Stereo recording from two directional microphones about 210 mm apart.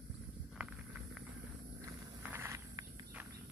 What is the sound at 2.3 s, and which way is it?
Insect, 10° right (ahead or behind).